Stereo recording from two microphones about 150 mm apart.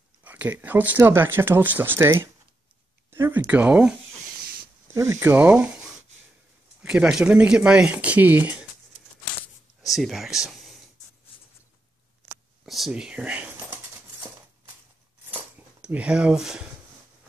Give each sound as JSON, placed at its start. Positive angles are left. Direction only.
{"t": 0.2, "sound": "speech", "side_deg": -10}
{"t": 4.9, "sound": "speech", "side_deg": -20}
{"t": 6.8, "sound": "speech", "side_deg": -5}
{"t": 9.8, "sound": "speech", "side_deg": 0}
{"t": 12.6, "sound": "speech", "side_deg": 0}
{"t": 15.8, "sound": "speech", "side_deg": -5}